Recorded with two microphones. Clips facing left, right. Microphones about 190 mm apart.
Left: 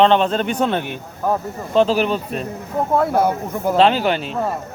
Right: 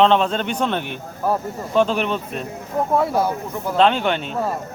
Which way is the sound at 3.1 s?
55° left (ahead or behind).